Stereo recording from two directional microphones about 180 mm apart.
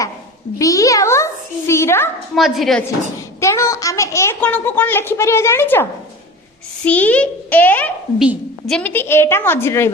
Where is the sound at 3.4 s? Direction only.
15° left (ahead or behind).